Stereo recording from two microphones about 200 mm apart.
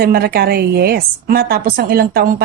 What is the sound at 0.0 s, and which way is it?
A woman's voice, 50° right (ahead or behind).